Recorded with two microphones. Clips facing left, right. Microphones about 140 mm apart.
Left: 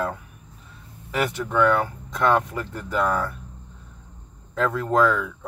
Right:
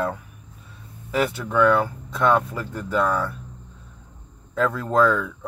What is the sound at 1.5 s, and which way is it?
Speech, 5° right (ahead or behind).